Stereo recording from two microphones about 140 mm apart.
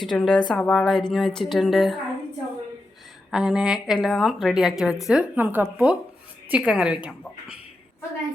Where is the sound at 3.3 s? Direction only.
5° right (ahead or behind).